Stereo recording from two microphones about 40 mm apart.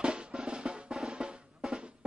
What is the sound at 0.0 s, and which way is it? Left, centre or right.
Drum, right.